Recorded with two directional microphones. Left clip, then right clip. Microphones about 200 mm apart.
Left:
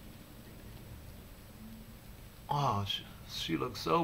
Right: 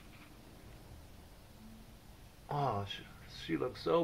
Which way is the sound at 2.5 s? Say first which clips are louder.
Left 4 dB; 25° left (ahead or behind).